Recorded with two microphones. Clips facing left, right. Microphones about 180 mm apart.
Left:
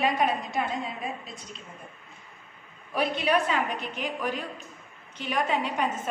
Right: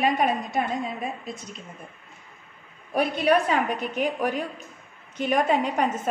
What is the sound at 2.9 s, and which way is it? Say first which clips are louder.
A woman's voice: right 4 dB; 50° right (ahead or behind).